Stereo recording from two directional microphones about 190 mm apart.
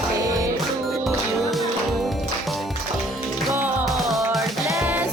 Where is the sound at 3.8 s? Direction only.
Centre (ahead or behind).